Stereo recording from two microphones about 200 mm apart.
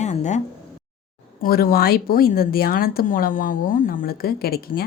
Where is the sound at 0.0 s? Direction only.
35° left (ahead or behind).